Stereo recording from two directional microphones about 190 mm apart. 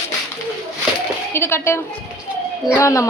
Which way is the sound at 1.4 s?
15° left (ahead or behind).